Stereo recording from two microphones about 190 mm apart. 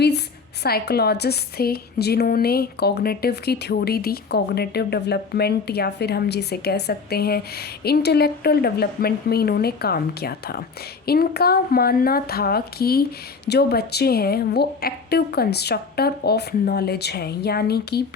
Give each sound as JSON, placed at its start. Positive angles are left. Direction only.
{"t": 0.6, "sound": "a woman's voice", "side_deg": 55}